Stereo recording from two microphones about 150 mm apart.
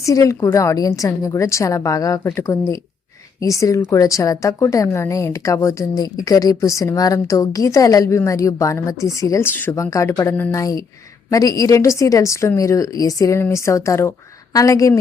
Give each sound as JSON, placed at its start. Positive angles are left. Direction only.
{"t": 0.0, "sound": "a woman's voice", "side_deg": 20}